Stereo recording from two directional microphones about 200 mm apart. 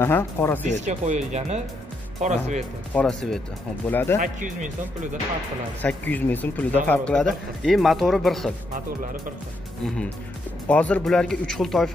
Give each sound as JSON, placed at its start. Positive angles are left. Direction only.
{"t": 0.0, "sound": "speech", "side_deg": 10}
{"t": 0.8, "sound": "speech", "side_deg": -35}
{"t": 2.9, "sound": "speech", "side_deg": 5}
{"t": 5.8, "sound": "speech", "side_deg": 10}
{"t": 9.8, "sound": "speech", "side_deg": 5}